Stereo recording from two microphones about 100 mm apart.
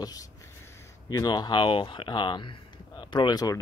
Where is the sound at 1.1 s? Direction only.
45° left (ahead or behind).